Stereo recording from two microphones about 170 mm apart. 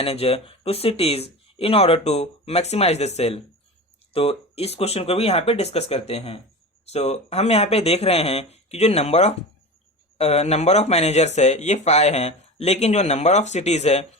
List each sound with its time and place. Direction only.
0.0 s speech: 35° left (ahead or behind)